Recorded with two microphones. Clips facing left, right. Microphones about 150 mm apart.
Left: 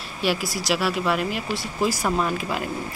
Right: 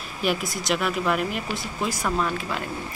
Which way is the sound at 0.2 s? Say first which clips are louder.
Left 1 dB; centre (ahead or behind).